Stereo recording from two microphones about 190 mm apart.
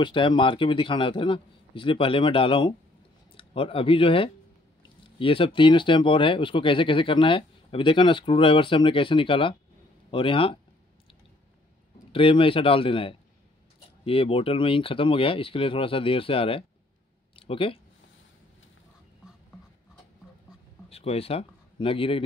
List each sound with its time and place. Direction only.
0.0 s speech: 25° left (ahead or behind)
12.1 s speech: 30° left (ahead or behind)
20.9 s speech: 30° left (ahead or behind)